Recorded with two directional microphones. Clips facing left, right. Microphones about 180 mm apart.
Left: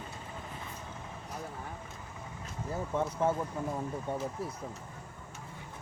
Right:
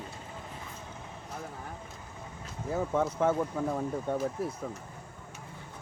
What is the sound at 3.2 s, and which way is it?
Speech, 80° right.